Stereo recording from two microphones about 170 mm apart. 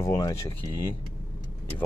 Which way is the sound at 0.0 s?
20° left (ahead or behind).